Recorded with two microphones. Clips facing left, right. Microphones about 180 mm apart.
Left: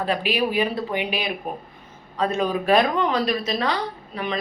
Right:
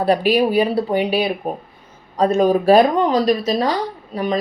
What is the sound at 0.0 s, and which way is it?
Speech, 40° right (ahead or behind).